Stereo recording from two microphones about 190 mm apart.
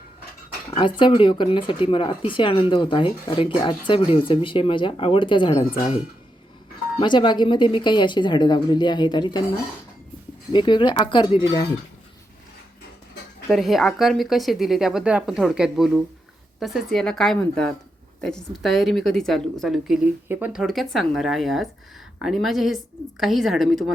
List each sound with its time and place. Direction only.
0.8 s speech: 25° left (ahead or behind)
7.0 s speech: 25° left (ahead or behind)
10.5 s speech: 25° left (ahead or behind)
13.5 s speech: centre (ahead or behind)